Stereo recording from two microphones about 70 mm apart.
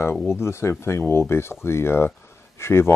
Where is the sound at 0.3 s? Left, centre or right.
Left.